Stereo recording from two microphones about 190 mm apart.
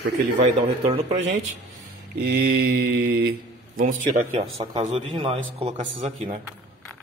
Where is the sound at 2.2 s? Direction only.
55° right (ahead or behind).